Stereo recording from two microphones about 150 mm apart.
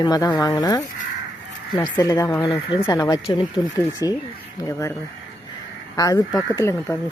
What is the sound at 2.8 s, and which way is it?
Speech, 25° left (ahead or behind).